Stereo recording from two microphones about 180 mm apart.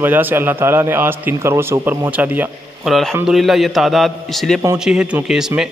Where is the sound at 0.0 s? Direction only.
10° right (ahead or behind).